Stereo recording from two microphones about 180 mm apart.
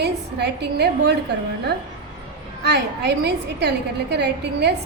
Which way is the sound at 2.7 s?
70° right (ahead or behind).